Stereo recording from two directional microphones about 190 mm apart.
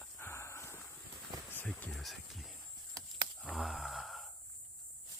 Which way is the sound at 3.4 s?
Centre (ahead or behind).